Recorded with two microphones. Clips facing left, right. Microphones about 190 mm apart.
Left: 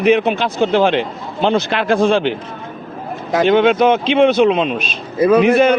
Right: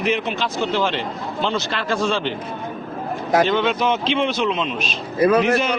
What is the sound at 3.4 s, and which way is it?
A man's voice, 55° left (ahead or behind).